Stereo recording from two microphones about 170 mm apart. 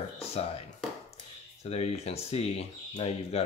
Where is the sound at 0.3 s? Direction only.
35° left (ahead or behind).